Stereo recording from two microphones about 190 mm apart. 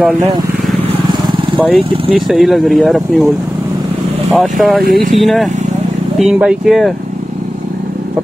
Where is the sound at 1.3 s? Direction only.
25° right (ahead or behind).